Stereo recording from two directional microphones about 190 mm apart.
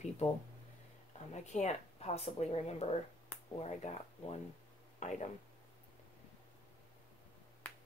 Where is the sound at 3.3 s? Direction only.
10° left (ahead or behind).